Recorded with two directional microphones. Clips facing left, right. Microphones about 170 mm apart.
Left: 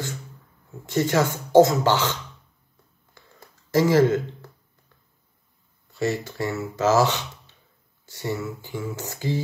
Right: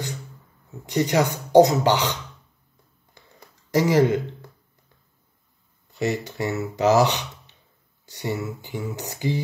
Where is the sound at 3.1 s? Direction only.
15° right (ahead or behind).